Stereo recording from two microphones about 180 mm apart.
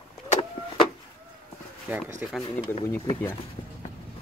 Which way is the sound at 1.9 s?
10° right (ahead or behind).